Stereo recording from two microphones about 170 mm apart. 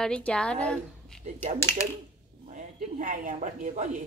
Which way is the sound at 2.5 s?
50° right (ahead or behind).